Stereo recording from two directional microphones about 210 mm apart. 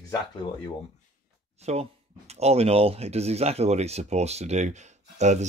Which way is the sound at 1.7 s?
30° right (ahead or behind).